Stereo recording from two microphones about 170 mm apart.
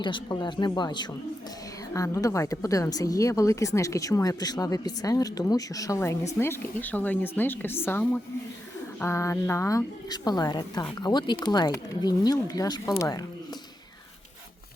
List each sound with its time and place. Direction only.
0.0 s speech: 25° left (ahead or behind)